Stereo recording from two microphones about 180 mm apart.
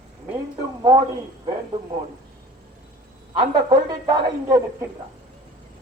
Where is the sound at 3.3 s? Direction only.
25° right (ahead or behind).